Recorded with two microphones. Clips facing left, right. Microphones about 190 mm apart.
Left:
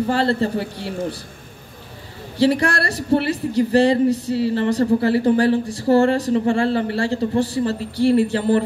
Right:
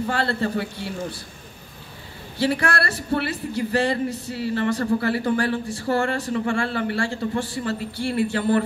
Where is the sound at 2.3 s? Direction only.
35° left (ahead or behind).